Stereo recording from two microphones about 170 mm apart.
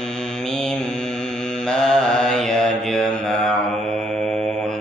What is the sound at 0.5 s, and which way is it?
Mantra, 5° left (ahead or behind).